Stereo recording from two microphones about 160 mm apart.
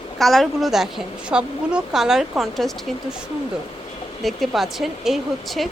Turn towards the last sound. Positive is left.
turn(degrees=0)  # may be behind; listen again after turning